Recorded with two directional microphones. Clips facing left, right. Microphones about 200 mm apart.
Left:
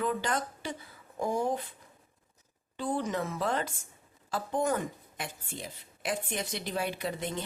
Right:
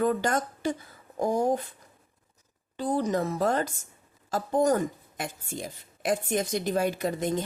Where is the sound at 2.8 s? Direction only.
40° right (ahead or behind).